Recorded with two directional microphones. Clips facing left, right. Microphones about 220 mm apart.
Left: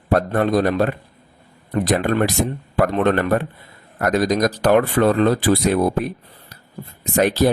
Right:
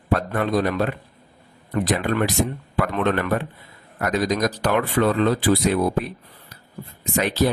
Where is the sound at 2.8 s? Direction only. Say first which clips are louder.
Left 5 dB; 45° left (ahead or behind).